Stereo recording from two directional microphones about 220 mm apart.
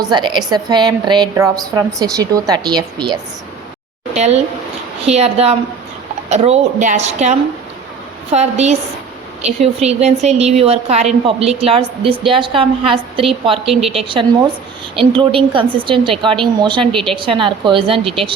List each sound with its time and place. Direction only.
0.1 s a woman's voice: 20° right (ahead or behind)
16.9 s a woman's voice: centre (ahead or behind)
17.2 s a woman's voice: 25° right (ahead or behind)